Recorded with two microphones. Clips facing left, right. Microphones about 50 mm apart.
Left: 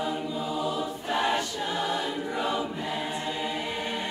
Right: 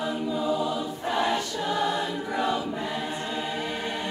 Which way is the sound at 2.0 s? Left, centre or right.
Centre.